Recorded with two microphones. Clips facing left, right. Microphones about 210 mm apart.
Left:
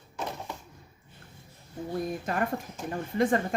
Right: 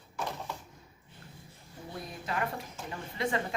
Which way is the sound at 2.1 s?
50° left (ahead or behind).